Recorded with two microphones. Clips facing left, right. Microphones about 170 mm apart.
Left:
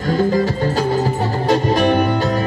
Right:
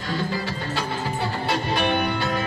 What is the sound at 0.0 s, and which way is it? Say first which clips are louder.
Music: left 11 dB; 45° left (ahead or behind).